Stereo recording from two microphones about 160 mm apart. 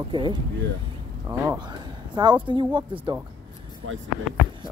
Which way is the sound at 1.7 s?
25° right (ahead or behind).